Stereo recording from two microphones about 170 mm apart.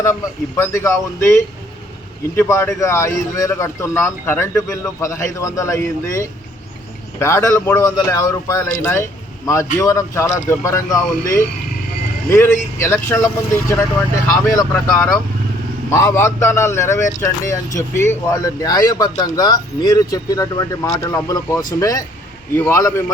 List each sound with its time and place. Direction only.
0.0 s speech: 15° left (ahead or behind)